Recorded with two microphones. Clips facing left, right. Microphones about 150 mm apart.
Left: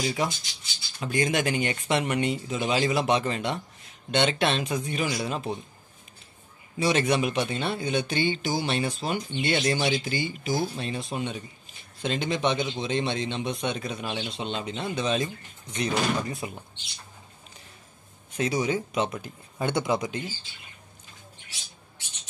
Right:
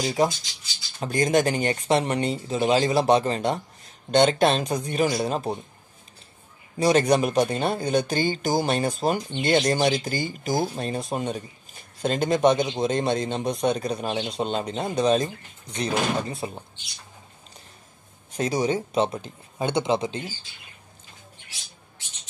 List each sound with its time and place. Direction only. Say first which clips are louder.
0.0 s speech: right 5 dB; 35° right (ahead or behind)
6.8 s speech: right 4 dB; 40° right (ahead or behind)
18.3 s speech: right 2 dB; 40° right (ahead or behind)